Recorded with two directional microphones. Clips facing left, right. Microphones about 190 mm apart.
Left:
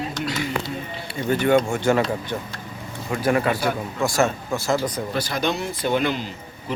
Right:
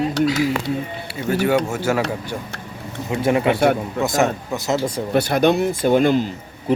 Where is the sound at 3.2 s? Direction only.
20° right (ahead or behind).